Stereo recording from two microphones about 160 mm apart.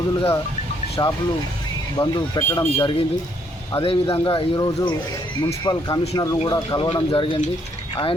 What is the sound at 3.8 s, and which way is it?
Speech, 35° left (ahead or behind).